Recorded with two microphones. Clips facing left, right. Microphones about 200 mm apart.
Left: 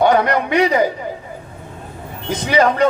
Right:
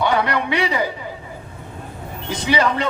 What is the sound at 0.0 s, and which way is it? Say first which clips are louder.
Speech: left 5 dB; 45° left (ahead or behind).